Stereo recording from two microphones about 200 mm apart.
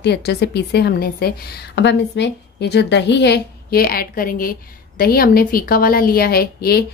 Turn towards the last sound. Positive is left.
turn(degrees=50)  # may be behind; listen again after turning